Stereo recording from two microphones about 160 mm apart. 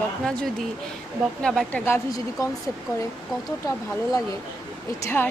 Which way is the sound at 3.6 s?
20° left (ahead or behind).